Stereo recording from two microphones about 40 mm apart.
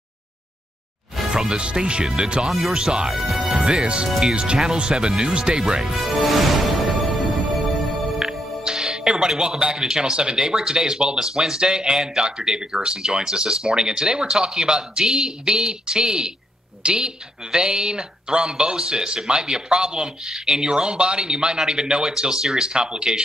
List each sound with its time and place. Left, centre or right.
1.3 s a man's voice: centre
3.1 s speech: centre
3.5 s music: centre
3.8 s a man's voice: right
5.9 s music: centre
8.2 s music: centre
9.7 s a man's voice: centre